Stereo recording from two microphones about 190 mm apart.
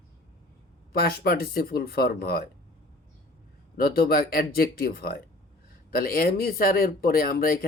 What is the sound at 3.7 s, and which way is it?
Speech, 55° left (ahead or behind).